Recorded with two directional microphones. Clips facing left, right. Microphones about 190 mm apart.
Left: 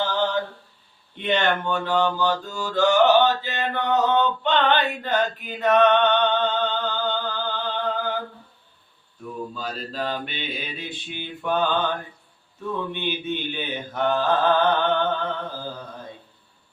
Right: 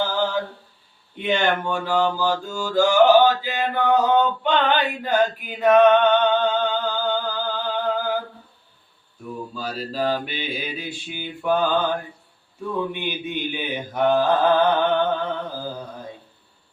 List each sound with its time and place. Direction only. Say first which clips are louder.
0.0 s a sound: right 1 dB; 10° right (ahead or behind)
1.1 s mantra: right 1 dB; 5° right (ahead or behind)
9.6 s mantra: right 7 dB; 5° right (ahead or behind)
12.9 s mantra: even; 10° right (ahead or behind)